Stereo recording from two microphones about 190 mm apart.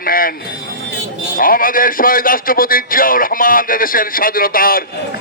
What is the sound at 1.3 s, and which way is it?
A man's voice, 45° left (ahead or behind).